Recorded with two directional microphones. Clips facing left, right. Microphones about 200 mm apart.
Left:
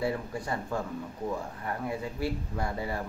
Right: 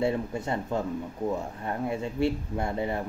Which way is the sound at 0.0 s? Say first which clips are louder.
Right 4 dB; 25° right (ahead or behind).